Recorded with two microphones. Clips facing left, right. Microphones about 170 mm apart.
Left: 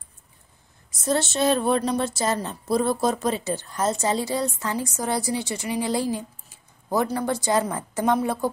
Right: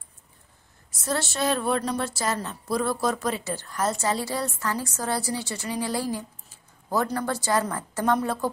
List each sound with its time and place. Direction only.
1.0 s a woman's voice: 20° left (ahead or behind)